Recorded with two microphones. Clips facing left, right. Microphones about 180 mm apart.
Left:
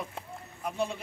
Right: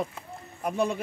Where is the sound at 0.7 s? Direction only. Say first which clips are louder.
Right 5 dB; 55° right (ahead or behind).